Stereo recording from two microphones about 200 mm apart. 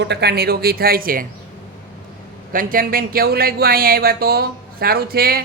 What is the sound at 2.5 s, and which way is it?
Speech, 45° right (ahead or behind).